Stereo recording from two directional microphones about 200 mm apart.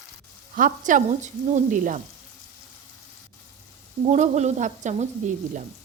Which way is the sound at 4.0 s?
35° right (ahead or behind).